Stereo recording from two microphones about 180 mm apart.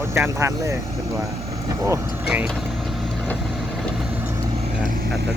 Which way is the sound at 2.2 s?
5° right (ahead or behind).